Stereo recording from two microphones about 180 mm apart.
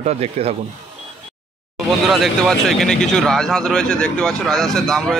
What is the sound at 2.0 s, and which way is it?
Speech, centre (ahead or behind).